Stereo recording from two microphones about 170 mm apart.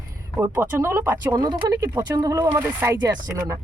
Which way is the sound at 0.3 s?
10° right (ahead or behind).